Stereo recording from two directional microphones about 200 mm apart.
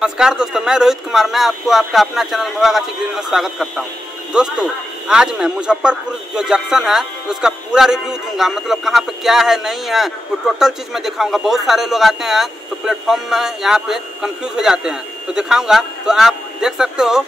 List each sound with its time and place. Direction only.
0.0 s speech: 5° right (ahead or behind)